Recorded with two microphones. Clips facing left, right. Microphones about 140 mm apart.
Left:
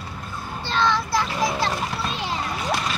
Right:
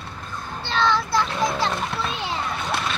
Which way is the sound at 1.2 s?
Centre (ahead or behind).